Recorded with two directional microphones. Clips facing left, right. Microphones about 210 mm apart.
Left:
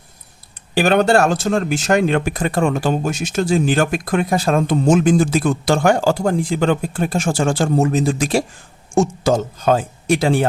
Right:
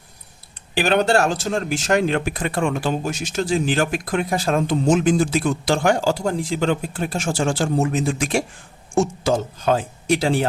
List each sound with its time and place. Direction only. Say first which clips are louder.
0.7 s speech: left 4 dB; 45° left (ahead or behind)